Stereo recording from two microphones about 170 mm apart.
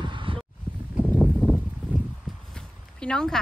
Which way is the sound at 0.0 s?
30° right (ahead or behind).